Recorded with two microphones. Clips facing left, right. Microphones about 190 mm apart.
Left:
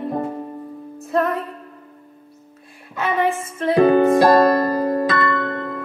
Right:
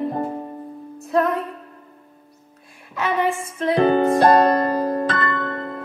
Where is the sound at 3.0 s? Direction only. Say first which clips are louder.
Left 1 dB; centre (ahead or behind).